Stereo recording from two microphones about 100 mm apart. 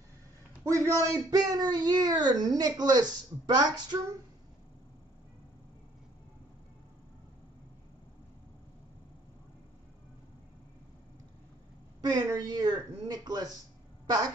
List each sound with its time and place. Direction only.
0.7 s a man's voice: 30° right (ahead or behind)
12.0 s a woman's voice: 40° right (ahead or behind)